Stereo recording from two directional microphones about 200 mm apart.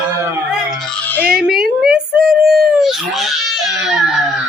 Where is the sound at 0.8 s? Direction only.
5° left (ahead or behind).